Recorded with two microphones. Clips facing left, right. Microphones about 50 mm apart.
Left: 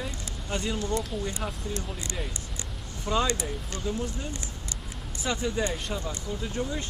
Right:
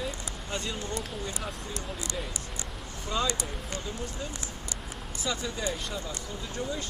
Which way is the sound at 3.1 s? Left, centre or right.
Left.